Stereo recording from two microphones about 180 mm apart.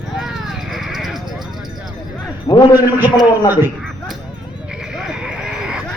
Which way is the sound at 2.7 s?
10° right (ahead or behind).